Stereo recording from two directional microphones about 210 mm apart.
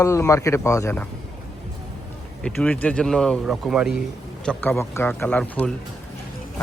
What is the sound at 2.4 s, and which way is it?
Speech, 5° left (ahead or behind).